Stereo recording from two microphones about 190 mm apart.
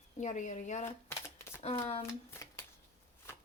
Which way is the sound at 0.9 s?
15° left (ahead or behind).